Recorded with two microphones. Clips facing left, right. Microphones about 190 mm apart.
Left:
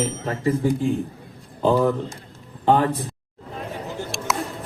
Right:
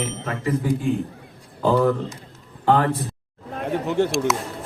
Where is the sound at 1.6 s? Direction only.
20° left (ahead or behind).